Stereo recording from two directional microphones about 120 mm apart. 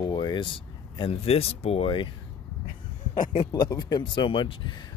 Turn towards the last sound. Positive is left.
turn(degrees=40)  # may be behind; listen again after turning